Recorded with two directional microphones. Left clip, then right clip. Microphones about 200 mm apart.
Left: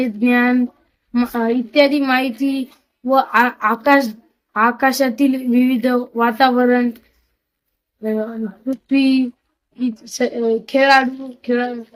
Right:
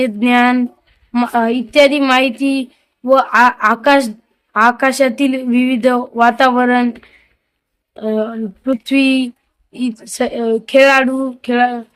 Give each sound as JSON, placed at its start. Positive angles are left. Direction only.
{"t": 0.0, "sound": "speech", "side_deg": -35}
{"t": 8.0, "sound": "speech", "side_deg": -35}